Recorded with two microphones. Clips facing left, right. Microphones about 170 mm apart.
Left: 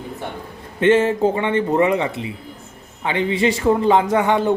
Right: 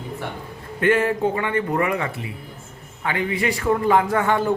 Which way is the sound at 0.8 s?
25° left (ahead or behind).